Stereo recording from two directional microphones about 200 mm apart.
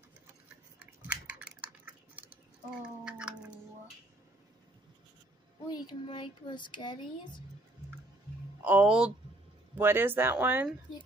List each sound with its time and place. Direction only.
0.7 s typing: 5° right (ahead or behind)
3.1 s cat: 5° right (ahead or behind)
5.7 s speech: 20° left (ahead or behind)
8.6 s speech: 5° right (ahead or behind)